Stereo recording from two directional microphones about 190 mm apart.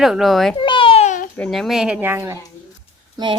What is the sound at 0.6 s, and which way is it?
Babbling, 25° left (ahead or behind).